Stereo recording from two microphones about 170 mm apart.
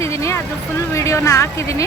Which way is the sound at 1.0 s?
15° left (ahead or behind).